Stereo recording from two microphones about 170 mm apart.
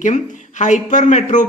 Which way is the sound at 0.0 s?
45° left (ahead or behind).